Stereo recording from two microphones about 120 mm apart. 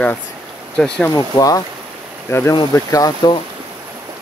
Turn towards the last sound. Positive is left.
turn(degrees=30)  # may be behind; listen again after turning